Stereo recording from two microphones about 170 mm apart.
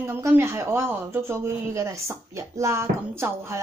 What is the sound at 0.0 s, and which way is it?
Speech, 15° right (ahead or behind).